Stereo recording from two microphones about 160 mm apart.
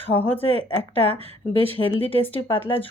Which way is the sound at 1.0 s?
35° right (ahead or behind).